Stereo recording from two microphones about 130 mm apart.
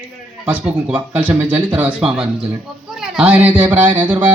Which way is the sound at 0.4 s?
10° right (ahead or behind).